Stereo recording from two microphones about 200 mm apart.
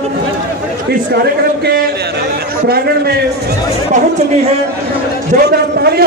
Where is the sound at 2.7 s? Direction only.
50° right (ahead or behind).